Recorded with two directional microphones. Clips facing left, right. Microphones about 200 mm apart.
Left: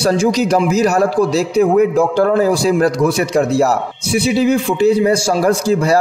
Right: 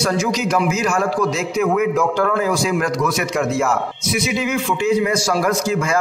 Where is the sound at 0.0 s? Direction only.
30° left (ahead or behind).